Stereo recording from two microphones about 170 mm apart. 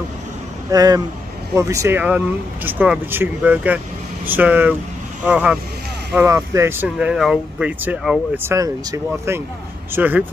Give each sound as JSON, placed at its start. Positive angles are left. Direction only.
{"t": 0.7, "sound": "speech", "side_deg": -20}
{"t": 6.1, "sound": "speech", "side_deg": -15}
{"t": 8.4, "sound": "speech", "side_deg": -15}